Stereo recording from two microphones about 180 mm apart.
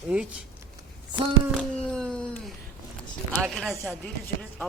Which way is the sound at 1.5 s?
5° left (ahead or behind).